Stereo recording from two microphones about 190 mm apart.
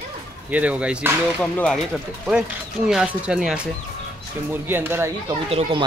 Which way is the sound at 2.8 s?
5° right (ahead or behind).